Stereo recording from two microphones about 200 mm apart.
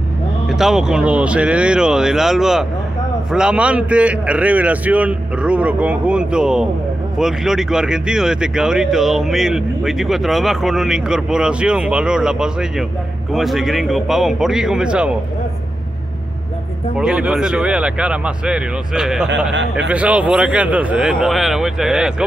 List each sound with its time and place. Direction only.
0.5 s a man's voice: centre (ahead or behind)
16.9 s speech: 5° right (ahead or behind)